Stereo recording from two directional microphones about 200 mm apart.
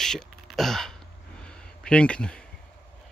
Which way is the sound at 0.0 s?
Centre (ahead or behind).